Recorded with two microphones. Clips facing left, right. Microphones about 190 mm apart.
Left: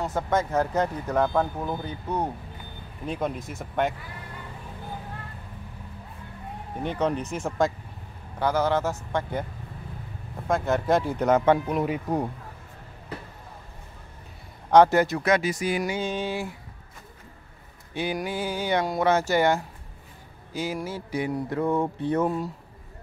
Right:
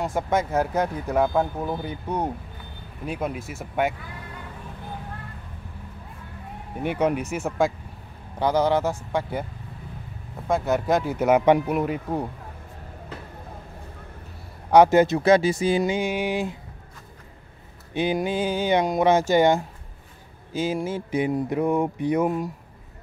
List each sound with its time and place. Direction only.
0.0 s speech: 10° right (ahead or behind)
6.8 s speech: 10° right (ahead or behind)
10.5 s speech: centre (ahead or behind)
14.7 s speech: 15° right (ahead or behind)
16.0 s speech: 15° right (ahead or behind)
17.9 s speech: 20° right (ahead or behind)